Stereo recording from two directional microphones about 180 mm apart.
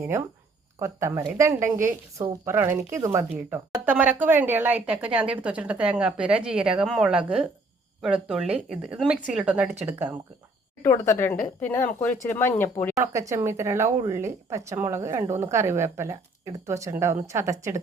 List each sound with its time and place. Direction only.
0.8 s a woman's voice: 15° right (ahead or behind)
10.8 s speech: 15° left (ahead or behind)
13.0 s a woman's voice: 15° right (ahead or behind)